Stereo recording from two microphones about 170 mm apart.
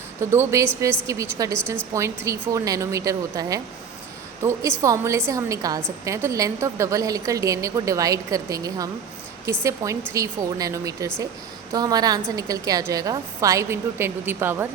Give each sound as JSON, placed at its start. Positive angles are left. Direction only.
{"t": 0.2, "sound": "a woman's voice", "side_deg": -15}